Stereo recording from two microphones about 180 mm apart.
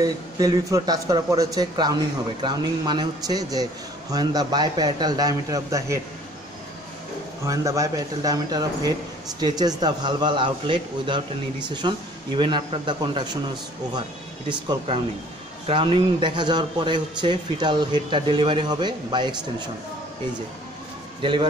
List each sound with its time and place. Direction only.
0.0 s a man's voice: 20° right (ahead or behind)
7.4 s a man's voice: 20° right (ahead or behind)
14.5 s a man's voice: 25° right (ahead or behind)
21.2 s a man's voice: 25° right (ahead or behind)